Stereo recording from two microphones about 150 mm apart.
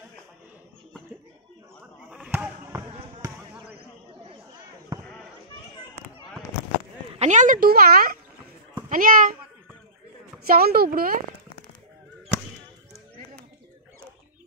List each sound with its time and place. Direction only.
2.0 s basketball bounce: 5° right (ahead or behind)
7.2 s speech: 55° right (ahead or behind); by 8.2 s 75° right (ahead or behind)
8.8 s a child's voice: 60° right (ahead or behind)
10.4 s speech: 85° right